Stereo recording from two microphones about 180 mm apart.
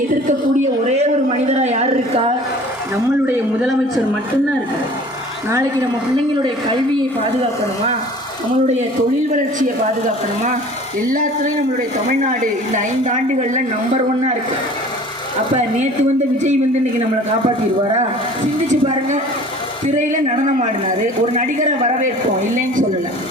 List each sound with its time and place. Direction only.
0.9 s a sound: 40° right (ahead or behind)
5.5 s a woman's voice: 15° right (ahead or behind)
11.1 s a woman's voice: 50° right (ahead or behind)
18.7 s a woman's voice: 40° right (ahead or behind)
21.3 s a woman's voice: 45° right (ahead or behind)